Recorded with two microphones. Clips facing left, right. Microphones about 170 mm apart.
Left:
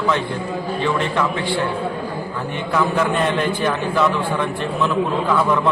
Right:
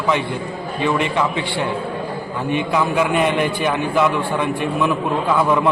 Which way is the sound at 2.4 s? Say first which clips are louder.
Right 2 dB; 15° right (ahead or behind).